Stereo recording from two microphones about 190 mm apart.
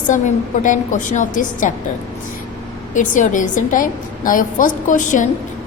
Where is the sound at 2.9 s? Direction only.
40° left (ahead or behind).